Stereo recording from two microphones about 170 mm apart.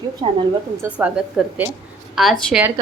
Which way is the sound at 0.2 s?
35° right (ahead or behind).